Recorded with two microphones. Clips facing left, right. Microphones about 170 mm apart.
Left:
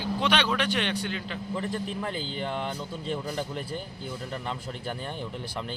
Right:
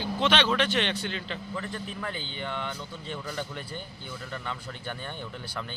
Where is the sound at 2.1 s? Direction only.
40° left (ahead or behind).